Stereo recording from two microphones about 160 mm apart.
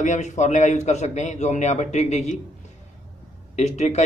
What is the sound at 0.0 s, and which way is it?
A man's voice, 50° left (ahead or behind).